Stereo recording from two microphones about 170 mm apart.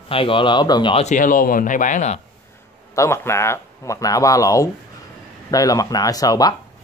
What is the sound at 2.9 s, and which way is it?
Speech, 15° left (ahead or behind).